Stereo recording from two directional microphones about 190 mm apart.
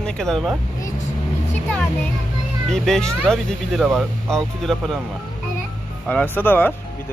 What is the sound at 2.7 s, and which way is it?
Speech, centre (ahead or behind).